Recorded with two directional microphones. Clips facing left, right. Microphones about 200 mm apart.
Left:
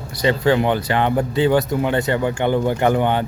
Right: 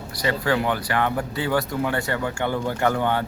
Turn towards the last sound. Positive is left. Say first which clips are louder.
# left 5 dB
turn(degrees=20)  # may be behind; listen again after turning